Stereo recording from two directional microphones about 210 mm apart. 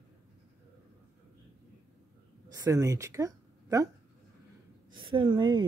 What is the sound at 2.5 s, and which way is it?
A woman's voice, 15° right (ahead or behind).